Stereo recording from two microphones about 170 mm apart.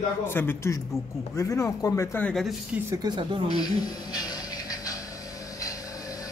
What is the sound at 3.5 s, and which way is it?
Music, 25° left (ahead or behind).